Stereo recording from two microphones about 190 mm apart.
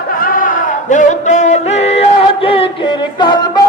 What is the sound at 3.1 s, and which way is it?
Music, 25° left (ahead or behind).